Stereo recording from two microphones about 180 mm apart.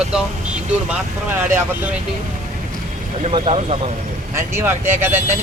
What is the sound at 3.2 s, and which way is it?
Speech, 35° right (ahead or behind).